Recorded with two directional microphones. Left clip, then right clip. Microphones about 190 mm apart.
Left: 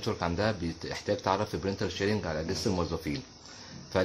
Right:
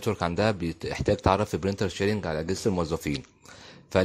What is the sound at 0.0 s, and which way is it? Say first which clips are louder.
A man's voice: right 4 dB; 40° right (ahead or behind).